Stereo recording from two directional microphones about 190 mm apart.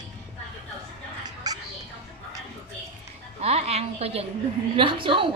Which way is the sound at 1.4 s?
20° right (ahead or behind).